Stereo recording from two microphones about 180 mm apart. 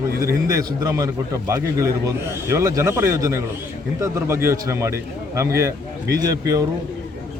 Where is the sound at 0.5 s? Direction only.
20° right (ahead or behind).